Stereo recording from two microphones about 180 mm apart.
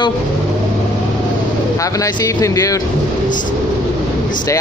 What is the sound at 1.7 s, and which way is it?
Speech, 20° left (ahead or behind).